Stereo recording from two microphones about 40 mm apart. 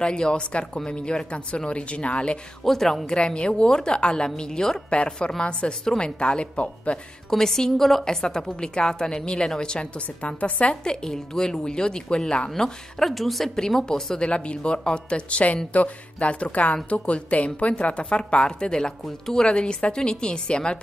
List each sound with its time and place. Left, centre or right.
0.0 s speech: left
2.6 s a woman's voice: centre
3.2 s a woman's voice: left
4.8 s speech: left
7.2 s a woman's voice: centre
9.9 s a woman's voice: left
10.8 s a woman's voice: centre
13.1 s a woman's voice: centre
13.6 s a woman's voice: centre
19.5 s speech: left